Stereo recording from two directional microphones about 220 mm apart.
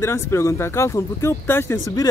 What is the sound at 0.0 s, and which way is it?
Speech, 10° left (ahead or behind).